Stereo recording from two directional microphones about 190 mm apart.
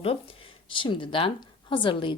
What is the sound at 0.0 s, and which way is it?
Speech, 30° left (ahead or behind).